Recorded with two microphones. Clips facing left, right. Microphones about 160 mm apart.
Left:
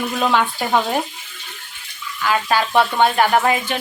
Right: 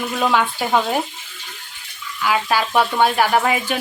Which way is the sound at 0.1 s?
5° right (ahead or behind).